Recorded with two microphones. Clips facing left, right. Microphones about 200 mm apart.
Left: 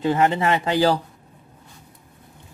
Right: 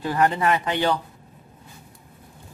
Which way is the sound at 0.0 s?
25° left (ahead or behind).